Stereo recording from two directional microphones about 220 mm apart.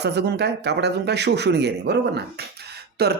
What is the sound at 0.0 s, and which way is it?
Speech, 50° right (ahead or behind).